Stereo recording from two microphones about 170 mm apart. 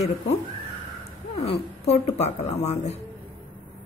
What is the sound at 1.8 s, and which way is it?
A woman's voice, 40° left (ahead or behind).